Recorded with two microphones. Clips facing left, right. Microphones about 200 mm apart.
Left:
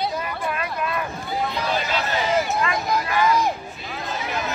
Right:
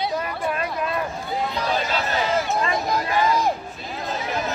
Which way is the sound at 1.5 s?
Centre (ahead or behind).